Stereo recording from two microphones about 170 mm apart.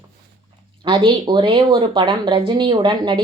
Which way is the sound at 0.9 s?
25° right (ahead or behind).